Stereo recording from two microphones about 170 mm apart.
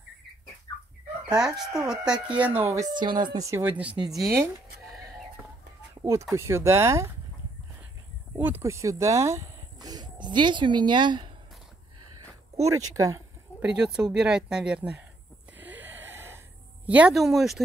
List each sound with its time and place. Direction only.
1.3 s speech: 5° right (ahead or behind)
2.9 s speech: 25° right (ahead or behind); by 4.4 s centre (ahead or behind)
6.3 s speech: 15° right (ahead or behind)
8.4 s speech: 10° right (ahead or behind); by 11.3 s 25° right (ahead or behind)
12.6 s speech: 20° right (ahead or behind)
13.6 s speech: 5° right (ahead or behind)
15.5 s a sound: 10° right (ahead or behind)
16.8 s speech: 5° right (ahead or behind)